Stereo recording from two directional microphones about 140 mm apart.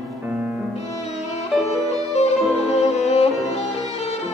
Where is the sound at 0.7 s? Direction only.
50° left (ahead or behind).